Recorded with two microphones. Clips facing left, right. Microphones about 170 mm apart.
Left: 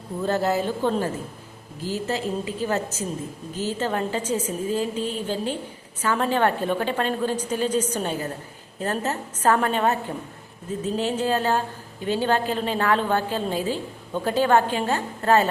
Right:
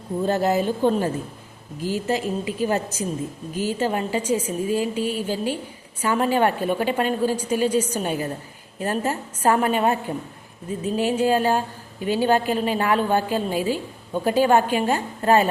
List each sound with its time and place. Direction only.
0.3 s a woman's voice: 15° right (ahead or behind)